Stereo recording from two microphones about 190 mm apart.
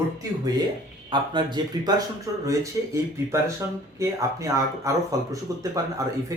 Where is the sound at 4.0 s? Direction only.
15° right (ahead or behind).